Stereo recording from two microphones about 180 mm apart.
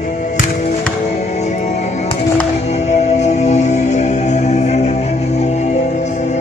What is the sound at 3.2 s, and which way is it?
Music, 40° left (ahead or behind).